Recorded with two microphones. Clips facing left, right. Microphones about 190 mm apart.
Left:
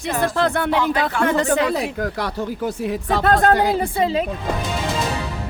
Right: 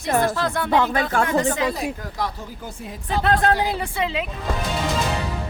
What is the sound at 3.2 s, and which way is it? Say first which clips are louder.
Speech: left 3 dB; 45° left (ahead or behind).